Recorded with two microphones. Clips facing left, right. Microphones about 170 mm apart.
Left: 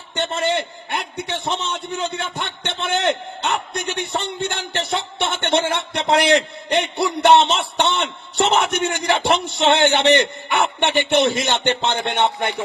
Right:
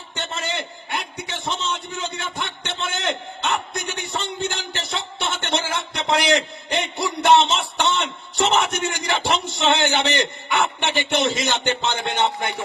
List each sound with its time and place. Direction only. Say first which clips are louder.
0.2 s a man's voice: left 7 dB; 55° left (ahead or behind)